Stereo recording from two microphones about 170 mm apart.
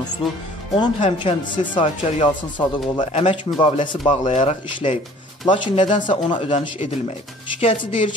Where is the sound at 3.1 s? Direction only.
40° left (ahead or behind).